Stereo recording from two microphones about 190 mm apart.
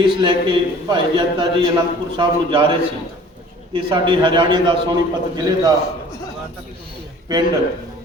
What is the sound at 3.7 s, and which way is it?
A man's voice, 25° right (ahead or behind).